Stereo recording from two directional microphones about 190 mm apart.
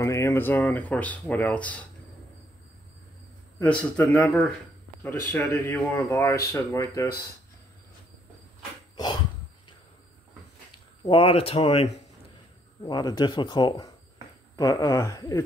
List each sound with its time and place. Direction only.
0.0 s speech: 15° left (ahead or behind)
3.5 s speech: 5° left (ahead or behind)
11.1 s speech: 30° left (ahead or behind)
12.8 s speech: 20° left (ahead or behind)